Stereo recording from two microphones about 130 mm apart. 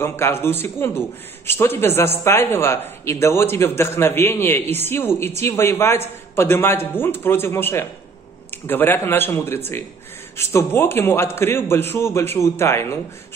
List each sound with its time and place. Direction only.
0.0 s a man's voice: 20° left (ahead or behind)